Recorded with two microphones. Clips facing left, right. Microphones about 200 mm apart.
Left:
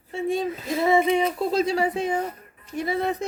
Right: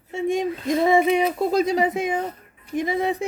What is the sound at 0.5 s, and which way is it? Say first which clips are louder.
Child singing: right 6 dB; 5° left (ahead or behind).